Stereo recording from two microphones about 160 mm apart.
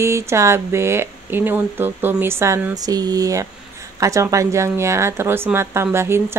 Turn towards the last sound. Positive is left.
turn(degrees=-15)  # may be behind; listen again after turning